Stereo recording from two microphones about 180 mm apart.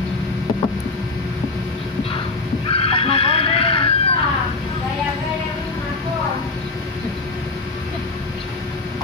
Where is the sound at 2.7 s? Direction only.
30° left (ahead or behind).